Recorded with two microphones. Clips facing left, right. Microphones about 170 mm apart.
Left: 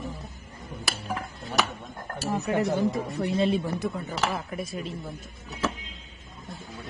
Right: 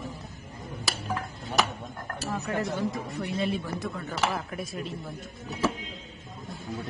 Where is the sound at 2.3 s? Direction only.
25° left (ahead or behind).